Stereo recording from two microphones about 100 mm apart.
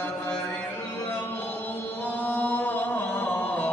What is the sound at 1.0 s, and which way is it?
Chant, 20° left (ahead or behind).